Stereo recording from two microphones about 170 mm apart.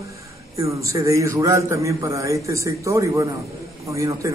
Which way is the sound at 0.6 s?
20° right (ahead or behind).